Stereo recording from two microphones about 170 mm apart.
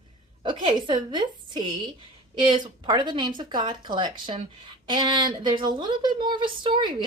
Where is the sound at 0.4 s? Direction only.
30° right (ahead or behind).